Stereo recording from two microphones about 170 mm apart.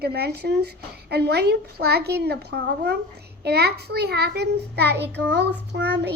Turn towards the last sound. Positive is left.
turn(degrees=-85)